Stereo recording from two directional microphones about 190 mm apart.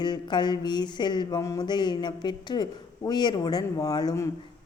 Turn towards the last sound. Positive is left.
turn(degrees=20)  # may be behind; listen again after turning